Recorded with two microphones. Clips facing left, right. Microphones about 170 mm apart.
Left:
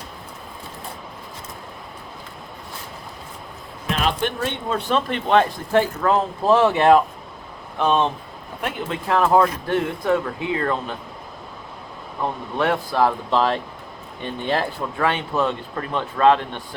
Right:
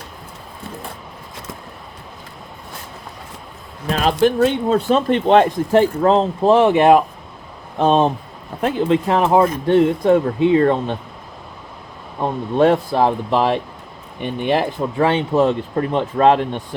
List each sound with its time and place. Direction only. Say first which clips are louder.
3.8 s speech: right 7 dB; 40° right (ahead or behind); by 7.0 s 20° right (ahead or behind)
7.8 s speech: right 5 dB; 35° right (ahead or behind)
8.6 s speech: right 10 dB; 25° right (ahead or behind)
12.2 s speech: right 7 dB; 25° right (ahead or behind)